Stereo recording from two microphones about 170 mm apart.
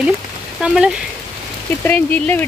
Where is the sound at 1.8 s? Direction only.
10° left (ahead or behind).